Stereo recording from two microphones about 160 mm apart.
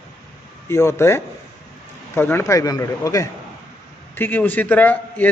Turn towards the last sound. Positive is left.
turn(degrees=10)  # may be behind; listen again after turning